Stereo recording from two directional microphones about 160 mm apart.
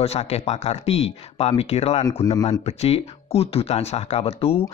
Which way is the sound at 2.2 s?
25° left (ahead or behind).